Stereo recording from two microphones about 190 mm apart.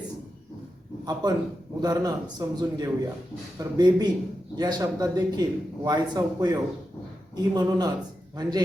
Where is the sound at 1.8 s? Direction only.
20° right (ahead or behind).